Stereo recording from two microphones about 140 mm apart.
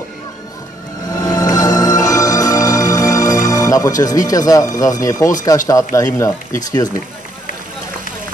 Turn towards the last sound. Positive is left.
turn(degrees=25)  # may be behind; listen again after turning